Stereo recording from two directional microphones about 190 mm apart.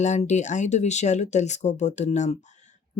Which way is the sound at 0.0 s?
40° left (ahead or behind).